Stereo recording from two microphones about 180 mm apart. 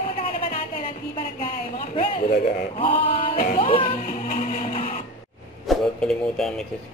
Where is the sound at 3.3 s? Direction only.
55° left (ahead or behind).